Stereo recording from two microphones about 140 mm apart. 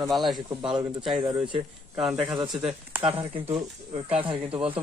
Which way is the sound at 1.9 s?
5° right (ahead or behind).